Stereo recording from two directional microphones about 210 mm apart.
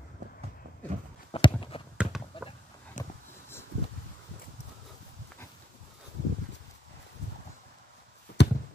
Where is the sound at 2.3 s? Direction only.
25° left (ahead or behind).